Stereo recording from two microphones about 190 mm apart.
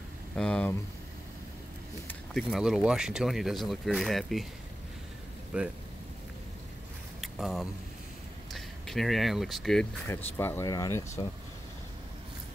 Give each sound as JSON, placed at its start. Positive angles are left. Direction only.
{"t": 0.4, "sound": "speech", "side_deg": 5}
{"t": 2.0, "sound": "speech", "side_deg": 0}
{"t": 5.5, "sound": "speech", "side_deg": -5}
{"t": 7.2, "sound": "mechanisms", "side_deg": 0}
{"t": 8.5, "sound": "speech", "side_deg": 0}
{"t": 10.0, "sound": "speech", "side_deg": 10}